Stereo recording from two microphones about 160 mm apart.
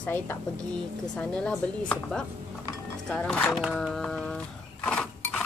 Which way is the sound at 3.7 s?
5° left (ahead or behind).